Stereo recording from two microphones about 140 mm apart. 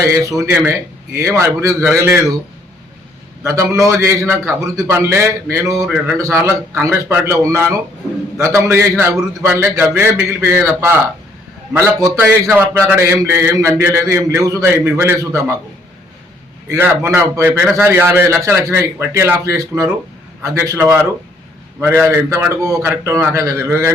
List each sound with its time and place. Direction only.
0.1 s a man's voice: 20° right (ahead or behind)
3.4 s a man's voice: 20° right (ahead or behind)
5.8 s a man's voice: 10° right (ahead or behind)
16.6 s a man's voice: 15° right (ahead or behind)